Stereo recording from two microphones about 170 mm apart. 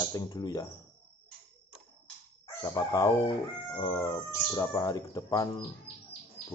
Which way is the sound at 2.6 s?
25° left (ahead or behind).